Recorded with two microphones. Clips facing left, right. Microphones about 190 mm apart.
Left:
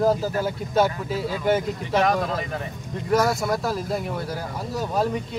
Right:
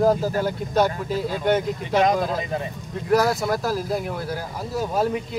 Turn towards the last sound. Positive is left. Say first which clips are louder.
# right 1 dB
turn(degrees=-5)  # may be behind; listen again after turning